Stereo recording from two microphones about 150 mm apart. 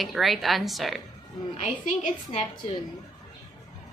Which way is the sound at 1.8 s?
60° left (ahead or behind).